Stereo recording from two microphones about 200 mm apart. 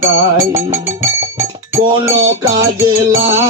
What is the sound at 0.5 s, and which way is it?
Music, 15° right (ahead or behind).